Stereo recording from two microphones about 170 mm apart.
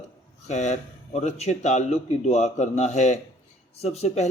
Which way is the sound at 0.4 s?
45° left (ahead or behind).